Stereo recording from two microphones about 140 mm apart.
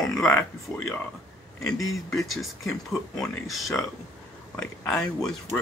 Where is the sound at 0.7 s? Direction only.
20° left (ahead or behind).